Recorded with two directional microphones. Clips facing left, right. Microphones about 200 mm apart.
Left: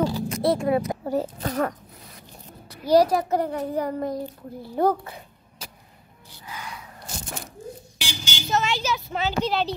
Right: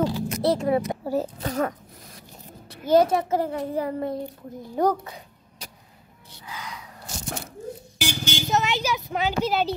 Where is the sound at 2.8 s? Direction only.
25° right (ahead or behind).